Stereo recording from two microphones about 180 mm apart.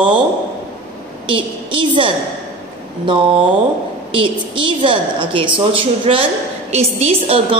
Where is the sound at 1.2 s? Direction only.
30° right (ahead or behind).